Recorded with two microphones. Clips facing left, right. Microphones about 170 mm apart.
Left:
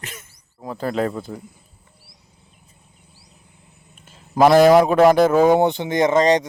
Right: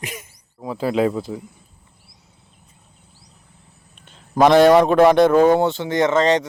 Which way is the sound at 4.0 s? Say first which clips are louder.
Even; 5° left (ahead or behind).